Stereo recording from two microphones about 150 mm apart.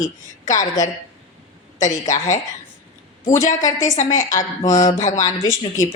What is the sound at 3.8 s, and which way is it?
Speech, 55° left (ahead or behind).